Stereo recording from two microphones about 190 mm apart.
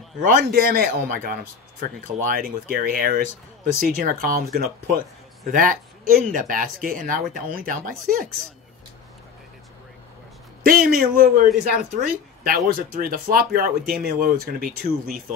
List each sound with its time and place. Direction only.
0.2 s speech: 45° right (ahead or behind)
10.6 s speech: 50° right (ahead or behind)